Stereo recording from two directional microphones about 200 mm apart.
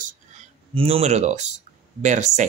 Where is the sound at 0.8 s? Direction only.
30° right (ahead or behind).